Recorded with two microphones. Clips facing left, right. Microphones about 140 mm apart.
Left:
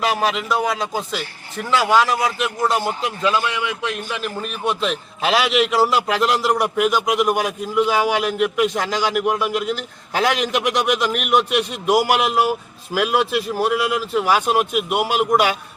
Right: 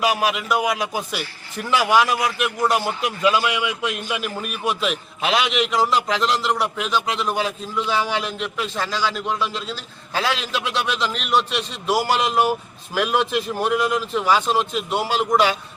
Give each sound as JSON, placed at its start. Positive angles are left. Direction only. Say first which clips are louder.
{"t": 0.0, "sound": "a man's voice", "louder": "left 1 dB", "side_deg": -10}